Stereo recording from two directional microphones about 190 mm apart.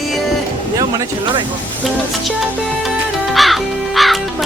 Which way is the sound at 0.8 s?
20° right (ahead or behind).